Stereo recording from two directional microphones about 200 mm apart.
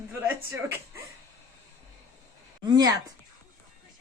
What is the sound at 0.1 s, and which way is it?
Speech, 15° right (ahead or behind).